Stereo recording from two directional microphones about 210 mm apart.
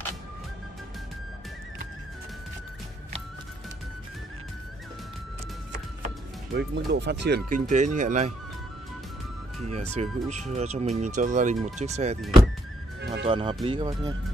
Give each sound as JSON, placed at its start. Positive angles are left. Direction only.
{"t": 5.7, "sound": "music", "side_deg": -45}
{"t": 6.7, "sound": "speech", "side_deg": -55}
{"t": 9.9, "sound": "speech", "side_deg": -35}
{"t": 13.2, "sound": "speech", "side_deg": -25}